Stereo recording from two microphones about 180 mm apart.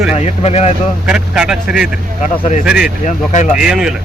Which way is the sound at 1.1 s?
5° right (ahead or behind).